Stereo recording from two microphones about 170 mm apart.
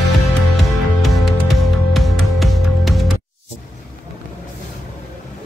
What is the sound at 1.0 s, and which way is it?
Music, centre (ahead or behind).